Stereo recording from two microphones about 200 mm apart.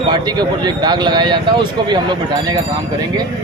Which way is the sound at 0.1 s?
20° right (ahead or behind).